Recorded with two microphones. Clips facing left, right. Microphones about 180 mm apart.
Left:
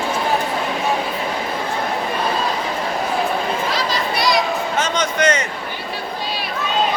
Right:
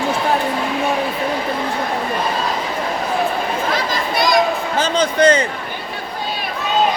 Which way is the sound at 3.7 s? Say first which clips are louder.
Right 1 dB; 50° right (ahead or behind).